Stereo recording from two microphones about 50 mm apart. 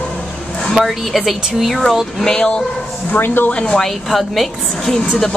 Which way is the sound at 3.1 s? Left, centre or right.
Left.